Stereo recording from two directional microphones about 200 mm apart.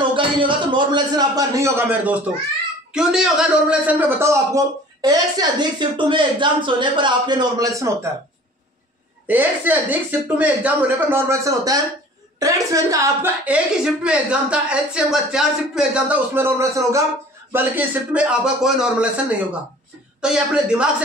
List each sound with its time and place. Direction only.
0.1 s a man's voice: 25° right (ahead or behind)
9.3 s a man's voice: 10° right (ahead or behind)
20.2 s speech: 5° right (ahead or behind)